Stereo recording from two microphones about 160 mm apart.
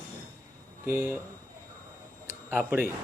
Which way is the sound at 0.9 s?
15° right (ahead or behind).